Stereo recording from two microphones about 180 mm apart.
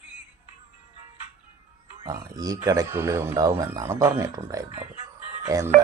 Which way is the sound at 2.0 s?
20° right (ahead or behind).